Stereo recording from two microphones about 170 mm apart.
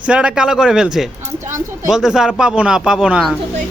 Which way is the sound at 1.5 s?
45° right (ahead or behind).